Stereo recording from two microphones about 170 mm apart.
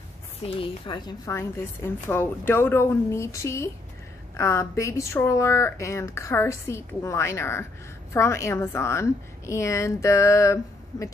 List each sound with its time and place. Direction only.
0.4 s a woman's voice: 30° left (ahead or behind)
2.0 s speech: 10° left (ahead or behind)